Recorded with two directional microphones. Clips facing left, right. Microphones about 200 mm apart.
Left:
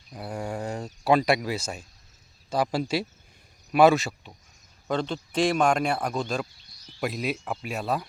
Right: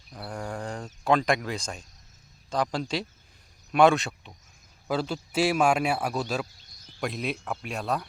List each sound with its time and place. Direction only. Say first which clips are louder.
0.1 s speech: left 3 dB; 10° left (ahead or behind)
6.7 s a sound: left 2 dB; 50° right (ahead or behind)
7.0 s speech: left 2 dB; centre (ahead or behind)